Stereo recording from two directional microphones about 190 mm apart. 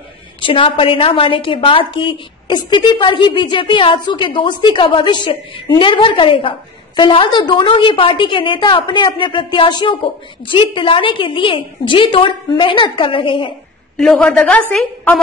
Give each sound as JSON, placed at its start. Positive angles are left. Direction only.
{"t": 0.4, "sound": "a woman's voice", "side_deg": 25}
{"t": 13.9, "sound": "a man's voice", "side_deg": 5}